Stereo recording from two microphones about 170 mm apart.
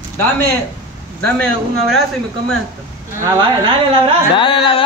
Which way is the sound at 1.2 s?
5° left (ahead or behind).